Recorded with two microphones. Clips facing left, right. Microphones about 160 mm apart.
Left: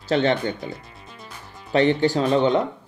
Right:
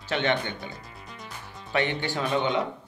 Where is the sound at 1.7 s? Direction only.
35° left (ahead or behind).